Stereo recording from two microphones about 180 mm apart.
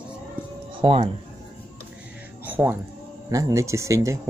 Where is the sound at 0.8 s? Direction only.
30° right (ahead or behind).